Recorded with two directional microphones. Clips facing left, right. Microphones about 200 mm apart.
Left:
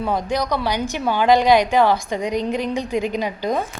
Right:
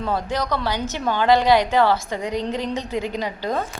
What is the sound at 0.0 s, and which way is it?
A woman's voice, 15° left (ahead or behind).